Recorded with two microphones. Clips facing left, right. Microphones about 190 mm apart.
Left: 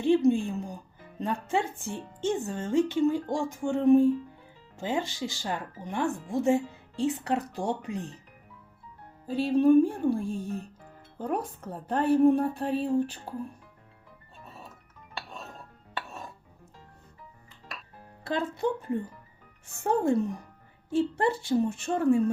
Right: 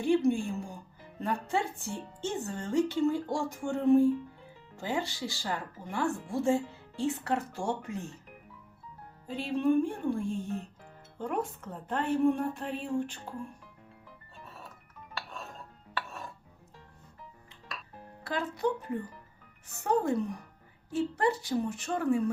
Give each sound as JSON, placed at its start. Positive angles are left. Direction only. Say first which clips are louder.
{"t": 0.3, "sound": "speech", "louder": "left 4 dB", "side_deg": 20}
{"t": 9.2, "sound": "speech", "louder": "left 6 dB", "side_deg": 35}
{"t": 18.3, "sound": "speech", "louder": "left 2 dB", "side_deg": 25}